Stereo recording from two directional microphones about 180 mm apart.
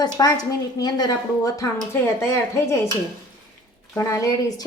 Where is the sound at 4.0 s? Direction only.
15° left (ahead or behind).